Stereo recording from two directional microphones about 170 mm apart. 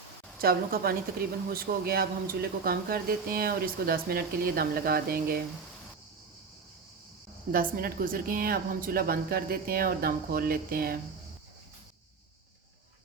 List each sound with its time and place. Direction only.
0.4 s speech: 60° right (ahead or behind)
7.5 s speech: 60° right (ahead or behind)